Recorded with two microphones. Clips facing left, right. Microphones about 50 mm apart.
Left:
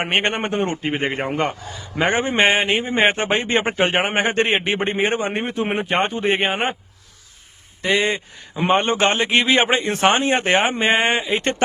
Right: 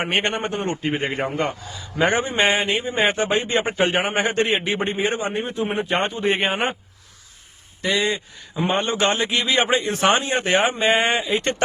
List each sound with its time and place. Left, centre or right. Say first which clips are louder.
0.0 s a man's voice: left 2 dB; left
0.3 s a man's voice: left 3 dB; left
5.8 s a man's voice: left 1 dB; left
6.5 s speech: left 1 dB; centre
7.8 s a man's voice: left 2 dB; left